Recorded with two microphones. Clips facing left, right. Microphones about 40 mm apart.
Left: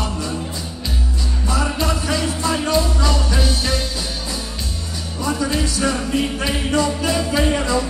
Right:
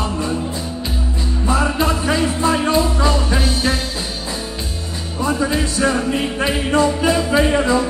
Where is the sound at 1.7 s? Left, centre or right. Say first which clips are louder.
Right 4 dB; right.